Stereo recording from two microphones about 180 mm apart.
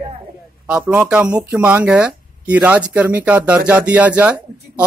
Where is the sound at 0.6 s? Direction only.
5° right (ahead or behind).